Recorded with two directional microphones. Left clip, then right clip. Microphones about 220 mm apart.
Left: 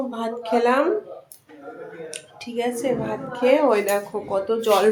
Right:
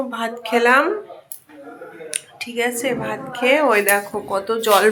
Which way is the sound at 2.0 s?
5° left (ahead or behind).